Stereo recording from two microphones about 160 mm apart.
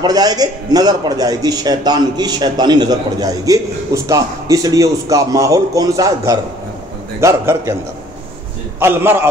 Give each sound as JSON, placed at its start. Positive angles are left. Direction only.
{"t": 0.0, "sound": "a man's voice", "side_deg": -25}
{"t": 8.7, "sound": "a man's voice", "side_deg": -15}